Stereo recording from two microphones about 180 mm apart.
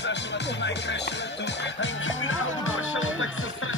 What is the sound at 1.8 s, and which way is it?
Music, 90° left.